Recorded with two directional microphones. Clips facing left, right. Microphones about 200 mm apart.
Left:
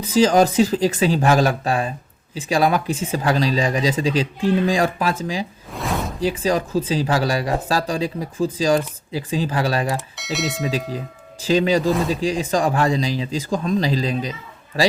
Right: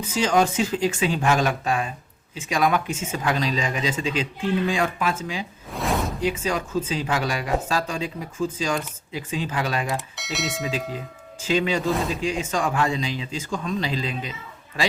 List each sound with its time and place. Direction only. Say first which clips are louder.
0.0 s speech: left 6 dB; 35° left (ahead or behind)
5.7 s a sound: even; centre (ahead or behind)
6.1 s speech: left 5 dB; 35° left (ahead or behind)
10.2 s speech: left 4 dB; centre (ahead or behind)
11.3 s speech: left 5 dB; 35° left (ahead or behind)